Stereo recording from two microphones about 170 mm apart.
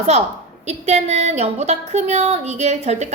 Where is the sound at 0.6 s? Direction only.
40° right (ahead or behind).